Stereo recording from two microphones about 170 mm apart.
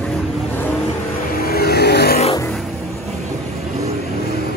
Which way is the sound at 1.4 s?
65° left (ahead or behind).